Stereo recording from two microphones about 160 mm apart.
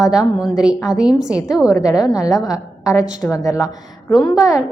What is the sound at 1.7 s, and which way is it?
A woman's voice, 20° left (ahead or behind).